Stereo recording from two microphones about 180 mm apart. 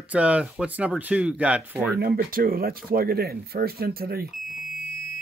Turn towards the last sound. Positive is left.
turn(degrees=0)  # may be behind; listen again after turning